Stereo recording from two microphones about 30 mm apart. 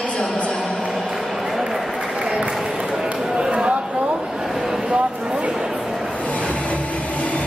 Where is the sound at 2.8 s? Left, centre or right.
Right.